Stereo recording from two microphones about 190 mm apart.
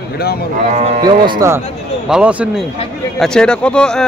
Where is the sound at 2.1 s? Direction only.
5° right (ahead or behind).